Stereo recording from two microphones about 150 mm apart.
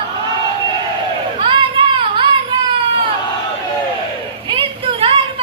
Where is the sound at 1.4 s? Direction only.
35° right (ahead or behind).